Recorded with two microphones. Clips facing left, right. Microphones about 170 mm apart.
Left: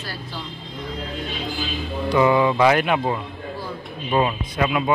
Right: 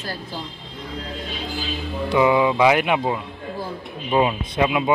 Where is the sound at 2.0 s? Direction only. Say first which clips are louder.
Even; 10° right (ahead or behind).